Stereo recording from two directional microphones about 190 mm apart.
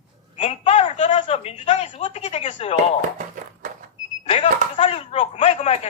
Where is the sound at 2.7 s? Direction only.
45° right (ahead or behind).